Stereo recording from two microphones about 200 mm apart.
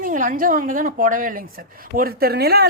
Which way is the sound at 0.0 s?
40° right (ahead or behind).